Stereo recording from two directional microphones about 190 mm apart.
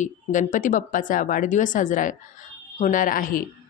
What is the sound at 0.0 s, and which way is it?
Speech, 40° left (ahead or behind).